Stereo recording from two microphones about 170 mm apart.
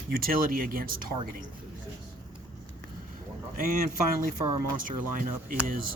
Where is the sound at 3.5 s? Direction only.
55° right (ahead or behind).